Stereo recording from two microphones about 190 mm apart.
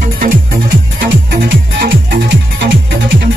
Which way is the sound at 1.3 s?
55° right (ahead or behind).